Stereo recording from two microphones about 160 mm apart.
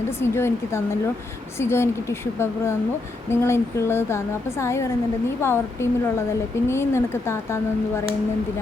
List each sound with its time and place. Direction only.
0.2 s speech: 15° left (ahead or behind)